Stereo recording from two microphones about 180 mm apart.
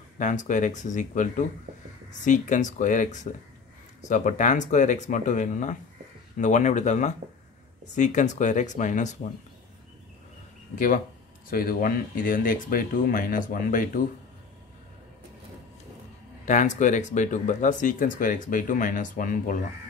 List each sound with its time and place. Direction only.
0.2 s speech: 45° left (ahead or behind)
11.5 s speech: 55° left (ahead or behind)
16.4 s speech: 40° left (ahead or behind)